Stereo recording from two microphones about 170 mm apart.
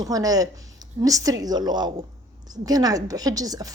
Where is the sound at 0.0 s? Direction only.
20° right (ahead or behind).